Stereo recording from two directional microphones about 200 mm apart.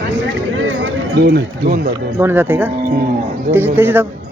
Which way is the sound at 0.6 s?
70° right (ahead or behind).